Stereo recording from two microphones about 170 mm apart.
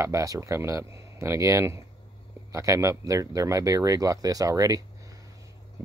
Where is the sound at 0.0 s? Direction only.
20° right (ahead or behind).